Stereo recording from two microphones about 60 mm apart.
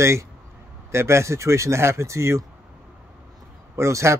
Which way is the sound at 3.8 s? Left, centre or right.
Right.